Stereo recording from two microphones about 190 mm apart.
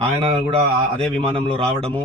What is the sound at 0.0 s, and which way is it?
A man's voice, 30° right (ahead or behind).